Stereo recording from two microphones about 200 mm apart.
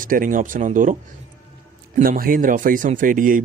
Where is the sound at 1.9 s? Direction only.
40° right (ahead or behind).